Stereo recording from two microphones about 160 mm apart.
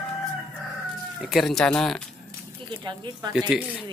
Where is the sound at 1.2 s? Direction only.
Centre (ahead or behind).